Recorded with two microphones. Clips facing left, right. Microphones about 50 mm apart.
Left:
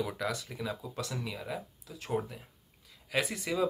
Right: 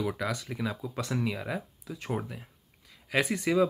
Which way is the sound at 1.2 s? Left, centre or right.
Right.